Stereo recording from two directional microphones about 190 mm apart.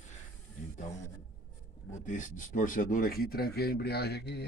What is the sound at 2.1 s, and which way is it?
Speech, 45° left (ahead or behind).